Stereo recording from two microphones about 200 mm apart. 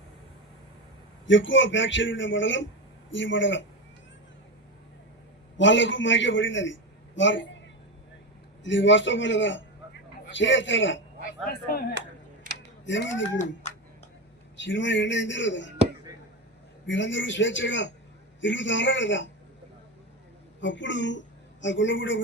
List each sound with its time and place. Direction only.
1.3 s a man's voice: 70° left (ahead or behind)
5.5 s a man's voice: 65° left (ahead or behind)
8.6 s a man's voice: 65° left (ahead or behind)
11.4 s speech: 50° left (ahead or behind)
12.4 s a sound: 45° right (ahead or behind)
12.8 s a man's voice: 65° left (ahead or behind)
13.4 s speech: 35° left (ahead or behind)
14.5 s a man's voice: 65° left (ahead or behind)
16.8 s a man's voice: 65° left (ahead or behind)
20.6 s a woman's voice: 65° left (ahead or behind)